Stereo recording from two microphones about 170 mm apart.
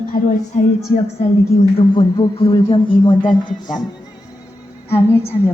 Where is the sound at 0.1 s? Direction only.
50° left (ahead or behind).